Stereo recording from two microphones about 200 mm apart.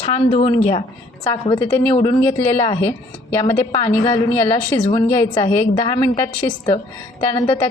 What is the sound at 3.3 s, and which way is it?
A woman's voice, 10° left (ahead or behind).